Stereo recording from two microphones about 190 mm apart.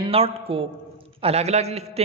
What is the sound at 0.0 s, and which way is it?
A man's voice, 30° right (ahead or behind).